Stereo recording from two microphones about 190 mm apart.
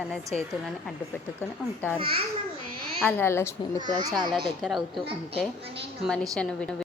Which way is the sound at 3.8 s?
20° right (ahead or behind).